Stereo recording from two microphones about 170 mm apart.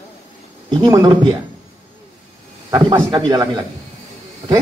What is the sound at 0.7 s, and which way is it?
Speech, 20° right (ahead or behind).